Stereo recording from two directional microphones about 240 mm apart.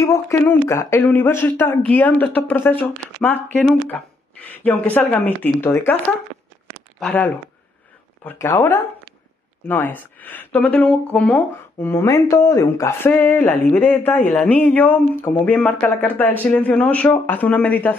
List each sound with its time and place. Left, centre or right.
0.0 s speech: centre
4.4 s speech: centre
7.0 s speech: centre